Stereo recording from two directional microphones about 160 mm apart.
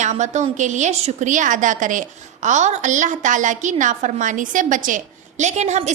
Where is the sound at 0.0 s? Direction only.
50° right (ahead or behind).